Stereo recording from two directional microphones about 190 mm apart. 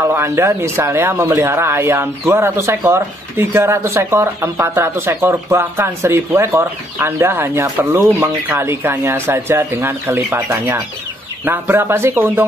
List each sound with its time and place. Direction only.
0.0 s speech: 15° right (ahead or behind)